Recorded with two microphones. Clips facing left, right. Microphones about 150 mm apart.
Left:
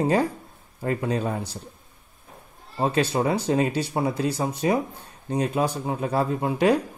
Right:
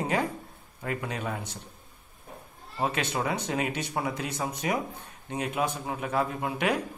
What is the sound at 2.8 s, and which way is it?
Speech, 35° left (ahead or behind).